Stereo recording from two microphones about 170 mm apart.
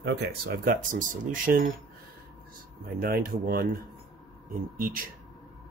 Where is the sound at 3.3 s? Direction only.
60° right (ahead or behind).